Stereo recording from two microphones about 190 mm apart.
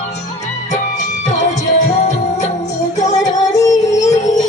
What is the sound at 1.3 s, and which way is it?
Music, 40° left (ahead or behind).